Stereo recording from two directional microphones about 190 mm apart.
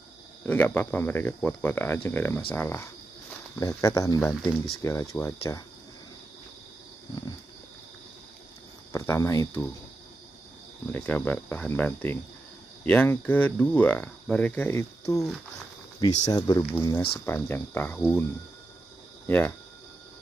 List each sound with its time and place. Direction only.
0.5 s cricket: 10° left (ahead or behind)
8.9 s speech: 15° left (ahead or behind)
10.9 s cricket: 10° left (ahead or behind)
16.3 s speech: 20° left (ahead or behind)
17.3 s cricket: 10° left (ahead or behind)
19.2 s speech: 10° left (ahead or behind)